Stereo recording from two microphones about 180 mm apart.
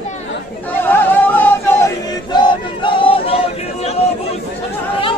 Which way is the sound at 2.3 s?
25° left (ahead or behind).